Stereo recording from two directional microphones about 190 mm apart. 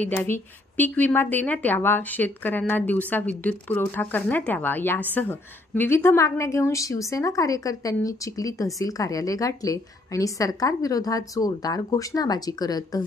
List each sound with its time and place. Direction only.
0.0 s a woman's voice: 10° left (ahead or behind)